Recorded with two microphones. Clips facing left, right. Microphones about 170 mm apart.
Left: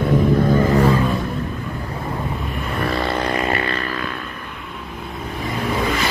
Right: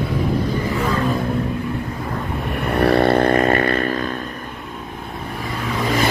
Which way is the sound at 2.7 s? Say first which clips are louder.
Right 8 dB; 65° right (ahead or behind).